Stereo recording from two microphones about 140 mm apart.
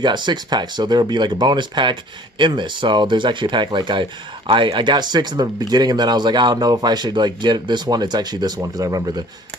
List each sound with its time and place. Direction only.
0.0 s speech: 30° right (ahead or behind)